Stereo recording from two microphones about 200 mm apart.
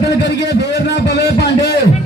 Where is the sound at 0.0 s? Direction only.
60° left (ahead or behind).